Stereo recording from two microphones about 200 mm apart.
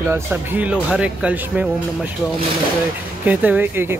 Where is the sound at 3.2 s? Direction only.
10° right (ahead or behind).